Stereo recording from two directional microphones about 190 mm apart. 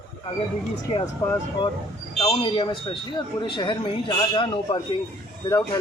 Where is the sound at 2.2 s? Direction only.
30° left (ahead or behind).